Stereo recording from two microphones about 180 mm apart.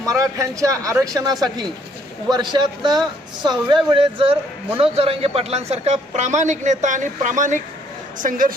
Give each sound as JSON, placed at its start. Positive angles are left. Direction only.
{"t": 0.0, "sound": "a man's voice", "side_deg": -20}